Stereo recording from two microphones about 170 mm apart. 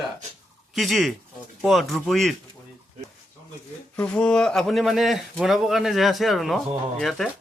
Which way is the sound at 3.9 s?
5° left (ahead or behind).